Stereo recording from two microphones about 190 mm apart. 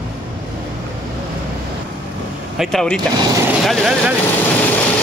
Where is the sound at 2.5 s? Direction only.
Centre (ahead or behind).